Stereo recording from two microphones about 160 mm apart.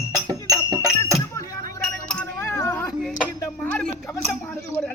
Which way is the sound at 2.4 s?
15° left (ahead or behind).